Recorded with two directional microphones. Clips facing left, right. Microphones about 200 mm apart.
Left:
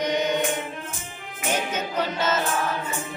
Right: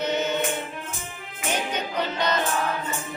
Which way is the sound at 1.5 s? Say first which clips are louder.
Left 1 dB; 5° left (ahead or behind).